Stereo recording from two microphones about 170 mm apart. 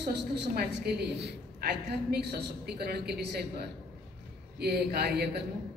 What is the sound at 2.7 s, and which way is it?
A woman's voice, 70° right (ahead or behind).